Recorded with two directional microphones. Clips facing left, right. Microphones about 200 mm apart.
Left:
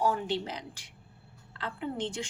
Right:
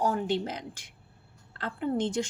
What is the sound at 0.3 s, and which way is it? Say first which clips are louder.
Speech: right 3 dB; 50° right (ahead or behind).